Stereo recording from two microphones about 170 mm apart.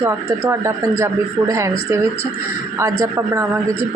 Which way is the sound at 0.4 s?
15° right (ahead or behind).